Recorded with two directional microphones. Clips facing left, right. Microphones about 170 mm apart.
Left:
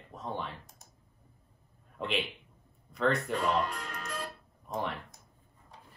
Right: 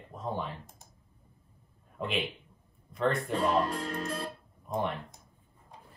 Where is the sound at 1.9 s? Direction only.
Centre (ahead or behind).